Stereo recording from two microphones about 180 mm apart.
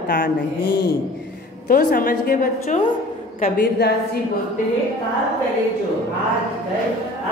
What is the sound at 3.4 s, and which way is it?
Speech, 60° left (ahead or behind).